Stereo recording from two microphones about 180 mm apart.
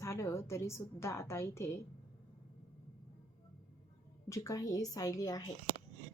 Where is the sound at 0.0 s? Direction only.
15° left (ahead or behind).